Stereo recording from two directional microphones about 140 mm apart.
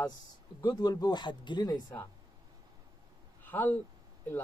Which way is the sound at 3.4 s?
15° left (ahead or behind).